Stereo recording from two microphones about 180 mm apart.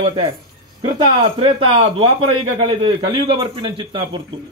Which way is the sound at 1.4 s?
30° right (ahead or behind).